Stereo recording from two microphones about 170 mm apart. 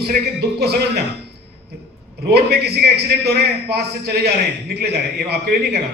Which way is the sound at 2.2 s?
70° right (ahead or behind).